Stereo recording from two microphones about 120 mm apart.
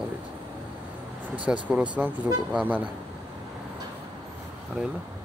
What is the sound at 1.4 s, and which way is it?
Speech, 10° right (ahead or behind).